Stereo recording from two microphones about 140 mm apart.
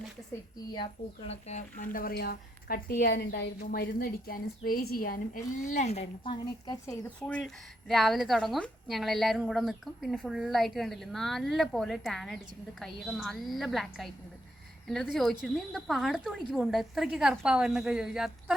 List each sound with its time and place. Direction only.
1.3 s speech: 50° left (ahead or behind)
1.7 s a woman's voice: 85° left; by 6.3 s 50° left (ahead or behind)
6.3 s a woman's voice: 30° left (ahead or behind)
7.2 s a woman's voice: 5° left (ahead or behind)